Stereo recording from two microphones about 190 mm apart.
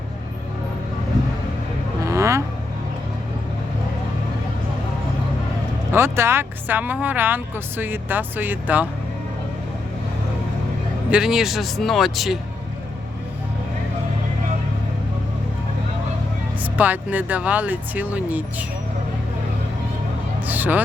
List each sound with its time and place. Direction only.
2.0 s vehicle: 15° right (ahead or behind)
5.9 s speech: 15° right (ahead or behind)
11.1 s speech: 5° right (ahead or behind)
16.7 s speech: 10° right (ahead or behind)
20.5 s speech: 10° right (ahead or behind)